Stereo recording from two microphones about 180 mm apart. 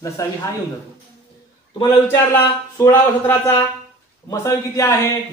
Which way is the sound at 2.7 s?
15° left (ahead or behind).